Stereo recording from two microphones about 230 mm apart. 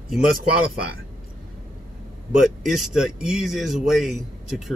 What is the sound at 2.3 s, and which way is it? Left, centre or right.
Speech, centre.